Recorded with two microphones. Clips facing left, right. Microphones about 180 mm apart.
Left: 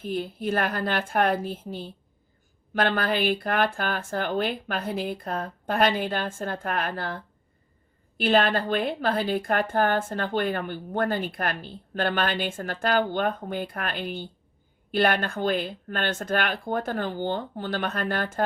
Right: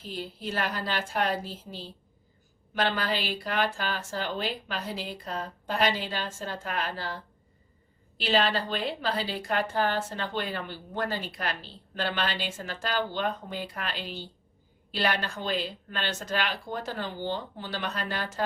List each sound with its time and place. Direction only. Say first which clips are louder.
0.0 s a woman's voice: left 7 dB; 55° left (ahead or behind)
8.2 s a woman's voice: left 4 dB; 55° left (ahead or behind)